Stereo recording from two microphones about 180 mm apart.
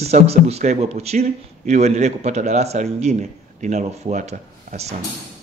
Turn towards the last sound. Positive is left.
turn(degrees=-35)  # may be behind; listen again after turning